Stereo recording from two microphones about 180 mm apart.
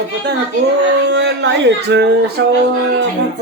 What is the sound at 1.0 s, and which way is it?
Speech, 75° right (ahead or behind).